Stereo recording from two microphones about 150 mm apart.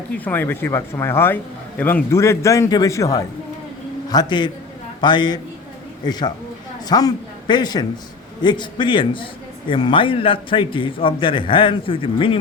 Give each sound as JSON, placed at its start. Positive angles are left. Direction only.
{"t": 0.3, "sound": "a man's voice", "side_deg": 15}